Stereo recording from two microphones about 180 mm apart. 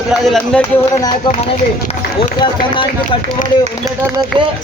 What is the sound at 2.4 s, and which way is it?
Speech, 25° left (ahead or behind).